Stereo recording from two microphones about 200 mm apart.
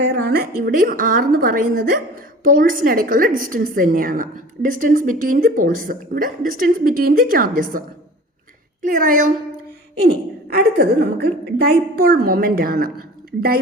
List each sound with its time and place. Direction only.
0.0 s a woman's voice: 55° right (ahead or behind)
10.6 s a woman's voice: 55° right (ahead or behind)